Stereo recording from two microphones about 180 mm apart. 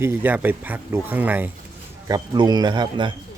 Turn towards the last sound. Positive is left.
turn(degrees=-25)  # may be behind; listen again after turning